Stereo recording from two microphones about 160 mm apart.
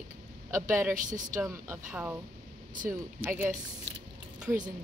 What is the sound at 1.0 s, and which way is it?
Speech, 55° right (ahead or behind).